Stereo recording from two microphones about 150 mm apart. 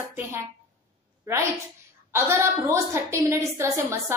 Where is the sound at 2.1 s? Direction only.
15° right (ahead or behind).